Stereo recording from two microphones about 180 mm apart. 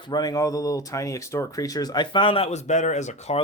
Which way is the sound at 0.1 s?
20° left (ahead or behind).